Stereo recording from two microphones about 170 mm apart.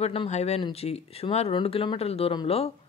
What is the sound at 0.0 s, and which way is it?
Speech, 35° left (ahead or behind).